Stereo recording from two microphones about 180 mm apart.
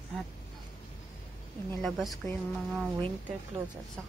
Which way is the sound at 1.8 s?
Centre (ahead or behind).